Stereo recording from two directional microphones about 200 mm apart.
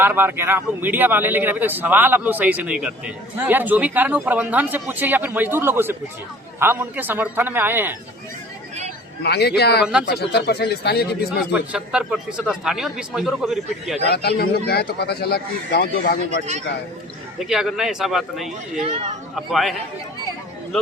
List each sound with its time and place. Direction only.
0.0 s speech: 10° right (ahead or behind)
9.2 s speech: 55° left (ahead or behind)
9.8 s a man's voice: 5° right (ahead or behind)
10.1 s speech: 55° left (ahead or behind)
11.5 s a man's voice: 5° right (ahead or behind)
14.1 s speech: 55° left (ahead or behind)
17.4 s a man's voice: centre (ahead or behind)